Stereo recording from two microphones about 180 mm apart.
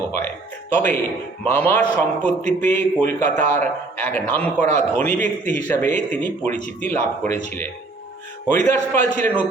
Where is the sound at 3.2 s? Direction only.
10° left (ahead or behind).